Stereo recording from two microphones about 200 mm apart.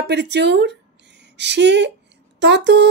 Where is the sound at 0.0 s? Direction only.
60° right (ahead or behind).